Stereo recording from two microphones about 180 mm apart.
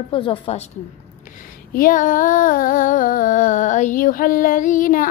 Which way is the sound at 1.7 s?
50° left (ahead or behind).